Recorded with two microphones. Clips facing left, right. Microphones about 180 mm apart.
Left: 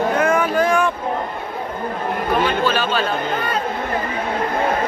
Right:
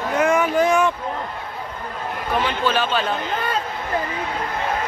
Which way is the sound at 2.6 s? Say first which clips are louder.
Left 2 dB; 25° right (ahead or behind).